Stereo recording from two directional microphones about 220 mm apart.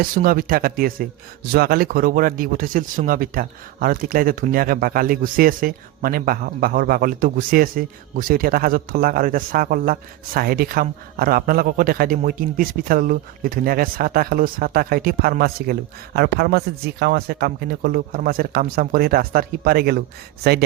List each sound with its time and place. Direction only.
0.0 s speech: 40° right (ahead or behind)